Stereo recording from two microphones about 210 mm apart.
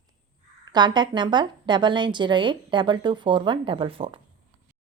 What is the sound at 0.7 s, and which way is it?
Speech, 20° right (ahead or behind).